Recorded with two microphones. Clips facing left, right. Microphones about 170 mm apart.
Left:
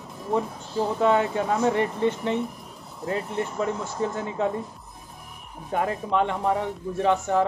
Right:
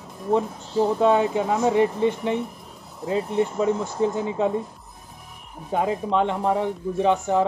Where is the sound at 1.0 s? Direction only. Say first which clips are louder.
Even; 15° right (ahead or behind).